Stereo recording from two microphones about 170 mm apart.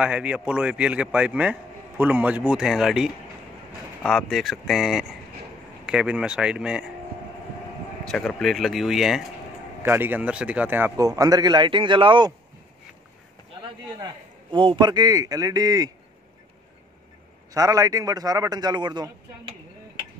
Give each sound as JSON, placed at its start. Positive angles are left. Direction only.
{"t": 0.0, "sound": "a man's voice", "side_deg": -5}
{"t": 8.0, "sound": "a man's voice", "side_deg": 5}
{"t": 13.6, "sound": "a man's voice", "side_deg": -25}
{"t": 17.6, "sound": "a man's voice", "side_deg": -20}